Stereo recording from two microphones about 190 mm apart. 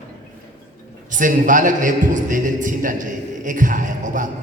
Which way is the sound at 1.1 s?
45° right (ahead or behind).